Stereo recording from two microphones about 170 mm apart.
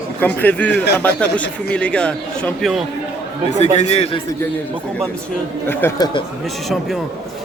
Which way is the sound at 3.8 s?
40° left (ahead or behind).